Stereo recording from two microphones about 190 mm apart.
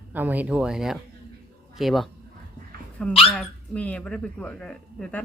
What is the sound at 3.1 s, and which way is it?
Speech, 30° left (ahead or behind).